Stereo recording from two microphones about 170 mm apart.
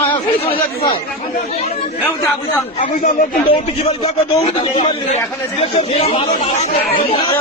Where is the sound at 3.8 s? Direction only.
35° left (ahead or behind).